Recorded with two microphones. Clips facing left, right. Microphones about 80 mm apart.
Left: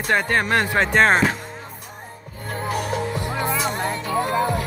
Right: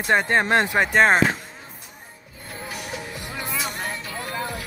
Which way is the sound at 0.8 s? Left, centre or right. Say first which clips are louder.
Left 2 dB; centre.